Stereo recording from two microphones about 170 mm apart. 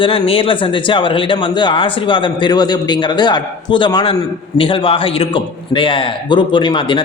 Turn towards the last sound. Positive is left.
turn(degrees=30)  # may be behind; listen again after turning